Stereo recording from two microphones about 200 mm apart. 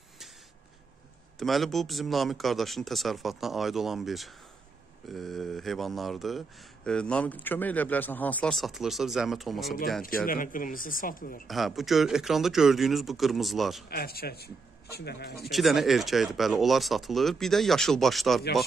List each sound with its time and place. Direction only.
1.4 s speech: centre (ahead or behind)
10.0 s speech: 45° left (ahead or behind)
11.4 s speech: centre (ahead or behind)
13.8 s speech: 50° left (ahead or behind)
15.5 s speech: centre (ahead or behind)